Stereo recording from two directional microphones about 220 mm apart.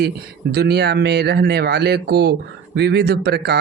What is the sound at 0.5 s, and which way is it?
Speech, 45° right (ahead or behind).